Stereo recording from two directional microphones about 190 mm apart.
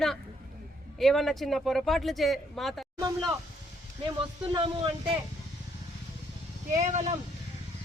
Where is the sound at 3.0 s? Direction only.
20° right (ahead or behind).